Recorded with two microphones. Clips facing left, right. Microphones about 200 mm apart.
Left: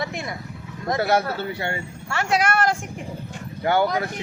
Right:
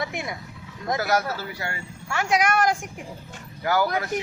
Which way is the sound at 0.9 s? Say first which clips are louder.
Left 3 dB; 30° left (ahead or behind).